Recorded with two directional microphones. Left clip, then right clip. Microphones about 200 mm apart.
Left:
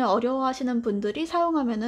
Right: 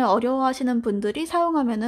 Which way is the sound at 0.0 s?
15° right (ahead or behind).